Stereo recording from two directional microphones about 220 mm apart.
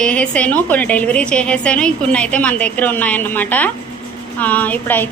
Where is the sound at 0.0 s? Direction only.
5° left (ahead or behind).